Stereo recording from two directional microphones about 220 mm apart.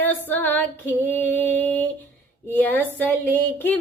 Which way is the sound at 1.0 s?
5° left (ahead or behind).